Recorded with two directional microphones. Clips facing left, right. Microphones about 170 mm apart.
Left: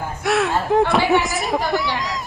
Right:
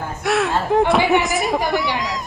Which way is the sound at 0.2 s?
Centre (ahead or behind).